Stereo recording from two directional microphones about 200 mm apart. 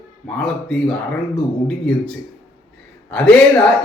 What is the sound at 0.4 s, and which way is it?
Speech, 5° left (ahead or behind).